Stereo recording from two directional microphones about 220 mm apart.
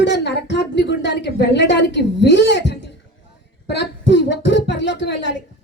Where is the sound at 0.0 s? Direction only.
55° left (ahead or behind).